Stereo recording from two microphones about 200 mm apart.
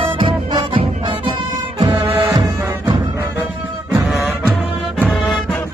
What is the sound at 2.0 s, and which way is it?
Music, 15° right (ahead or behind).